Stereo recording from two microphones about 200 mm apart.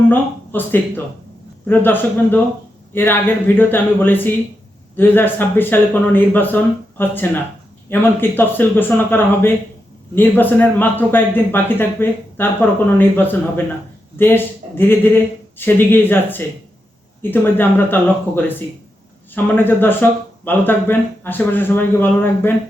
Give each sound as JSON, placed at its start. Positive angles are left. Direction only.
{"t": 0.1, "sound": "speech", "side_deg": 10}